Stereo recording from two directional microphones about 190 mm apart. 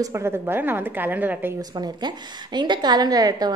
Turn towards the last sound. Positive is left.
turn(degrees=-20)  # may be behind; listen again after turning